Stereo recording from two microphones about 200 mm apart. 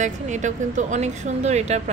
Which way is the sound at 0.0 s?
40° right (ahead or behind).